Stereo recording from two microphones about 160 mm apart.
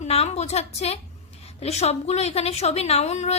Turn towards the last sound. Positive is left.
turn(degrees=45)  # may be behind; listen again after turning